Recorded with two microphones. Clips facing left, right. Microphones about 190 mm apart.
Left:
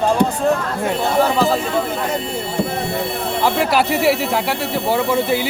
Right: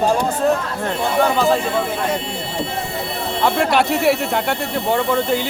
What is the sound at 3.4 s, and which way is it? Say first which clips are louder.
Speech: right 1 dB; centre (ahead or behind).